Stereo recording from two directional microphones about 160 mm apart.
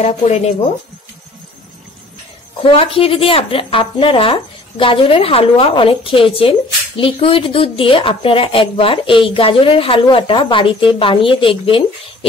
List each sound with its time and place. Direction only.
0.0 s speech: 40° left (ahead or behind)
2.6 s speech: 35° left (ahead or behind)